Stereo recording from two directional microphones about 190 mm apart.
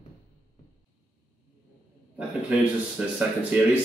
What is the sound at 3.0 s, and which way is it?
Speech, 5° right (ahead or behind).